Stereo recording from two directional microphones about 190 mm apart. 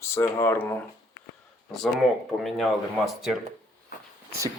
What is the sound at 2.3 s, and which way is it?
Speech, centre (ahead or behind).